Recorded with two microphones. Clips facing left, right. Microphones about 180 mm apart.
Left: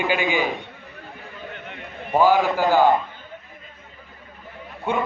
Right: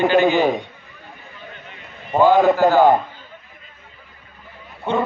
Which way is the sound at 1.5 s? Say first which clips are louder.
Left 4 dB; 65° left (ahead or behind).